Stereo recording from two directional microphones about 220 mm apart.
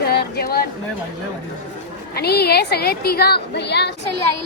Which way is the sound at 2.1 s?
45° left (ahead or behind).